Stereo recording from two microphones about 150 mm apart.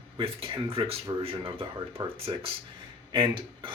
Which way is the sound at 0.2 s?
35° right (ahead or behind).